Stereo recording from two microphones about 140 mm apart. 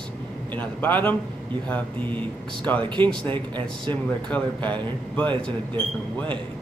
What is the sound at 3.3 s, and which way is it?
Speech, 35° right (ahead or behind).